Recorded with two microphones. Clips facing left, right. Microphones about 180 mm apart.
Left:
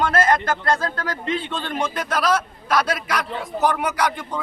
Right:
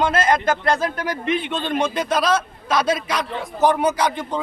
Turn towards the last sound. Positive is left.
turn(degrees=-25)  # may be behind; listen again after turning